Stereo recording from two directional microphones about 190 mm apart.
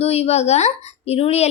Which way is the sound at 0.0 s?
35° left (ahead or behind).